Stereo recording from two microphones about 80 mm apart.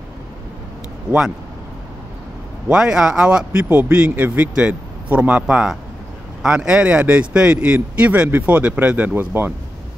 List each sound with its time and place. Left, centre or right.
2.7 s a man's voice: centre; by 9.5 s right